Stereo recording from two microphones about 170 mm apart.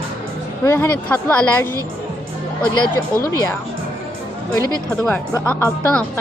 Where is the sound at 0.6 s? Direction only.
15° left (ahead or behind).